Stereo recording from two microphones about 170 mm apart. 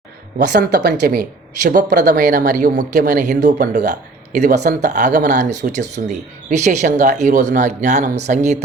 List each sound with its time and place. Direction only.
0.3 s speech: 75° right (ahead or behind); by 8.6 s 45° right (ahead or behind)